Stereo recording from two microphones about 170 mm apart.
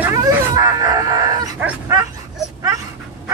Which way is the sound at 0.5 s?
20° right (ahead or behind).